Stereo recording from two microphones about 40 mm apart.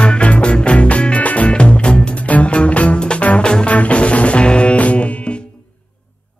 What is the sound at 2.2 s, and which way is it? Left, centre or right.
Music, left.